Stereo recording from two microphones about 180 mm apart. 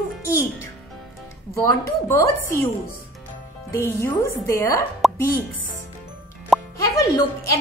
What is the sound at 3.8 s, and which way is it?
A woman's voice, 15° left (ahead or behind).